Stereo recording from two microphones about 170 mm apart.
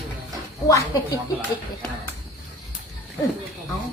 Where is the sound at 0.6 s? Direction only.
20° left (ahead or behind).